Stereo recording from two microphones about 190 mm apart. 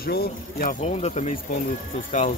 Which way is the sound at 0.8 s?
35° left (ahead or behind).